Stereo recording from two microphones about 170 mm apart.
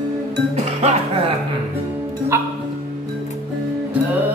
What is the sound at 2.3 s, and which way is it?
Music, 15° right (ahead or behind).